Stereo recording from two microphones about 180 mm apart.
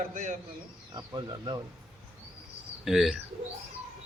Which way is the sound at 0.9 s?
25° right (ahead or behind).